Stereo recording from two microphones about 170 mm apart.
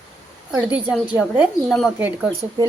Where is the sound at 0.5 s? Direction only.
5° right (ahead or behind).